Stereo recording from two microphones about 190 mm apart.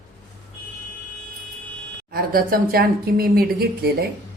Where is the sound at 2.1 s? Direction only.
50° right (ahead or behind).